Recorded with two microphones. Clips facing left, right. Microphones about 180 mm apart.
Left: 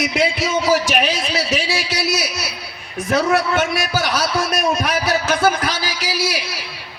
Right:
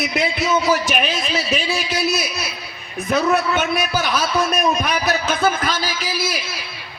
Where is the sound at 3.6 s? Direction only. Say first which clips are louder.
Left 1 dB; 90° left.